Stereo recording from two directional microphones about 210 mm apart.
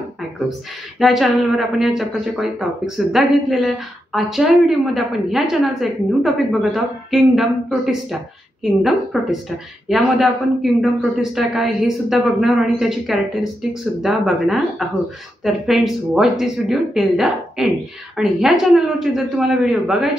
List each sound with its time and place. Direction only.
0.9 s a woman's voice: centre (ahead or behind)